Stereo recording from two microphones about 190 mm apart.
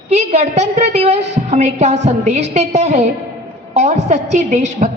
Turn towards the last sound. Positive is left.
turn(degrees=-40)  # may be behind; listen again after turning